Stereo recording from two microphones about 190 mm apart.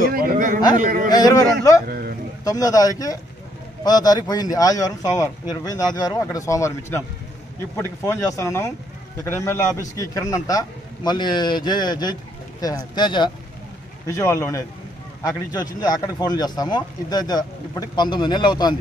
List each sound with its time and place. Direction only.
0.0 s a sound: 50° right (ahead or behind)
0.7 s a man's voice: 45° right (ahead or behind)
1.1 s a man's voice: 20° left (ahead or behind)
1.9 s speech: 50° right (ahead or behind)
2.4 s a man's voice: 20° left (ahead or behind)